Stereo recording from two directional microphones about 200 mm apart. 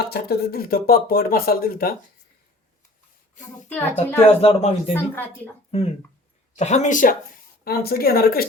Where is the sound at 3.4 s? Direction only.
40° left (ahead or behind).